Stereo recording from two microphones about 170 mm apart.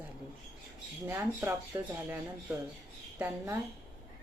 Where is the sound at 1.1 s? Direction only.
15° right (ahead or behind).